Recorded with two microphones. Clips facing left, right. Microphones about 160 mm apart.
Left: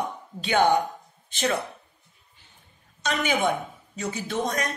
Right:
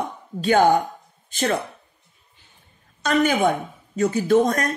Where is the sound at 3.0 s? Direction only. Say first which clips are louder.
Right 6 dB; 45° right (ahead or behind).